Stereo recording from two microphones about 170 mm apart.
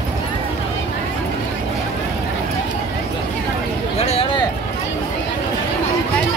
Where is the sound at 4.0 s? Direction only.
40° left (ahead or behind).